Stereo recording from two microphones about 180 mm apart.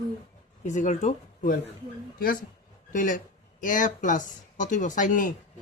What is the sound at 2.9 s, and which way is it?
Speech, 45° left (ahead or behind).